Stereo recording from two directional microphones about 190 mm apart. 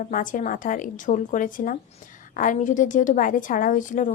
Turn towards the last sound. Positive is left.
turn(degrees=45)  # may be behind; listen again after turning